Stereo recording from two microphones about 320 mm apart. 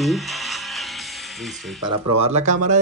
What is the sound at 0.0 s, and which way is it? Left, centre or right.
Music, centre.